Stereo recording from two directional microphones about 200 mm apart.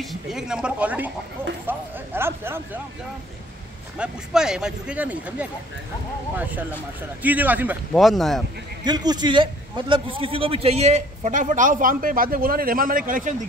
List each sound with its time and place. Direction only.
0.0 s speech: centre (ahead or behind)
4.0 s speech: 5° right (ahead or behind)
8.8 s a man's voice: 20° right (ahead or behind); by 13.3 s 45° right (ahead or behind)